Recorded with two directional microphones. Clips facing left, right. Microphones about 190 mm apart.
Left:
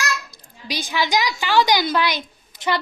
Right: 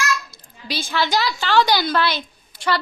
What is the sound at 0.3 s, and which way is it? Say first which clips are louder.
A woman's voice: even; 15° left (ahead or behind).